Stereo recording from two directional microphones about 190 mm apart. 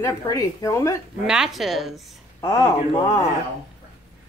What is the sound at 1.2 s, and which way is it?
Speech, centre (ahead or behind).